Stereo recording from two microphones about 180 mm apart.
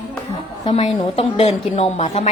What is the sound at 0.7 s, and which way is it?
A woman's voice, 30° left (ahead or behind).